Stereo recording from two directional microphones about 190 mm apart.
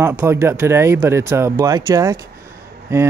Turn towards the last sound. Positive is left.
turn(degrees=-15)  # may be behind; listen again after turning